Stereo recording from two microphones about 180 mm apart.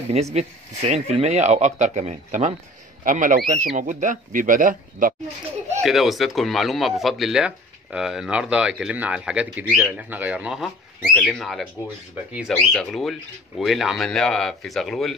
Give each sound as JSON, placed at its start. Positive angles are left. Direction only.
{"t": 0.1, "sound": "speech", "side_deg": -40}
{"t": 5.8, "sound": "speech", "side_deg": 0}